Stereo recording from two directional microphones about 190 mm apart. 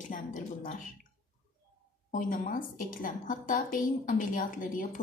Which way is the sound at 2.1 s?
45° left (ahead or behind).